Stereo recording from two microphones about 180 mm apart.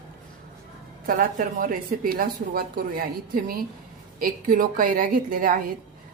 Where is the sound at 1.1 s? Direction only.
50° right (ahead or behind).